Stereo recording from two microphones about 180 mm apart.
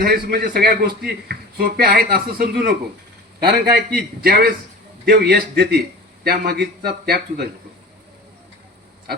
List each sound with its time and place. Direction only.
0.0 s a man's voice: 60° right (ahead or behind)